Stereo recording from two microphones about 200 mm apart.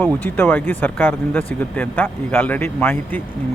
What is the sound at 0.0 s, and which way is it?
Speech, 10° left (ahead or behind).